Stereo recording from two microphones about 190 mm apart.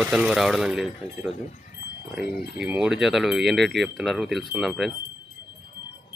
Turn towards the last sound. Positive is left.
turn(degrees=0)  # may be behind; listen again after turning